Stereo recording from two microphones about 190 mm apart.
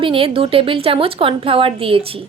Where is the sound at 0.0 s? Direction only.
30° right (ahead or behind).